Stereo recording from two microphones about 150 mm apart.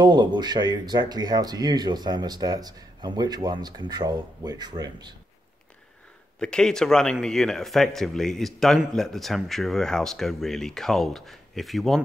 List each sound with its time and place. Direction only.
0.0 s speech: 30° right (ahead or behind)
6.4 s a man's voice: 5° left (ahead or behind)